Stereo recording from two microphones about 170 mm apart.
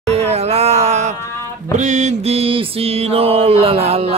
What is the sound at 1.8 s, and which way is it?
Mantra, 45° right (ahead or behind).